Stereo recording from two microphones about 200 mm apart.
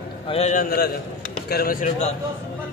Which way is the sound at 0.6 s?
50° left (ahead or behind).